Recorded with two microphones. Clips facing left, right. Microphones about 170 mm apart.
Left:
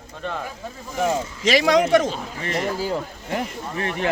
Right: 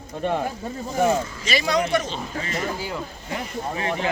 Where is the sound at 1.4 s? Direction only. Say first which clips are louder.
Left 8 dB; 90° left.